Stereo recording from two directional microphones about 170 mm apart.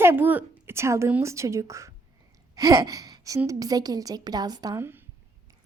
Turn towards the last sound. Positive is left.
turn(degrees=-15)  # may be behind; listen again after turning